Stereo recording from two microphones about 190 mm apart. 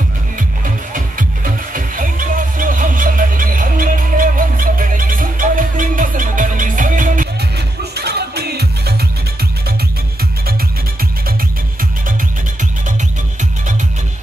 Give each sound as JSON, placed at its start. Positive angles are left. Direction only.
{"t": 0.9, "sound": "music", "side_deg": -45}